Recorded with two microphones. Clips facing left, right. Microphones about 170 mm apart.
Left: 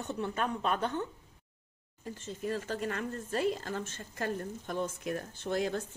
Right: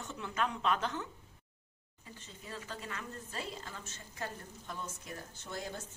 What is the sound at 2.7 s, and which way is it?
A woman's voice, 60° left (ahead or behind).